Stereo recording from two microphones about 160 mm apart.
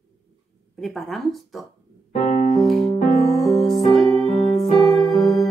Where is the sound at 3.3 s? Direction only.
Centre (ahead or behind).